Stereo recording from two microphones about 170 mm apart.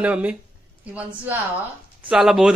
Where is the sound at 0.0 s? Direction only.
10° right (ahead or behind).